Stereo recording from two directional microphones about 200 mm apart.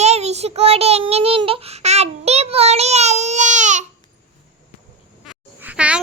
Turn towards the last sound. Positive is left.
turn(degrees=-5)  # may be behind; listen again after turning